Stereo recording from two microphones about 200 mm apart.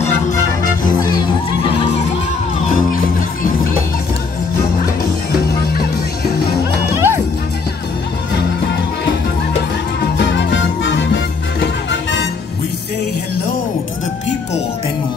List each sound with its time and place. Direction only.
1.0 s music: 25° left (ahead or behind)
2.6 s music: 40° left (ahead or behind)
6.9 s music: 10° right (ahead or behind)
10.1 s music: 60° left (ahead or behind)